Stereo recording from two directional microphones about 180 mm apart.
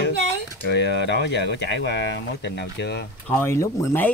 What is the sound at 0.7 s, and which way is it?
Speech, 70° left (ahead or behind).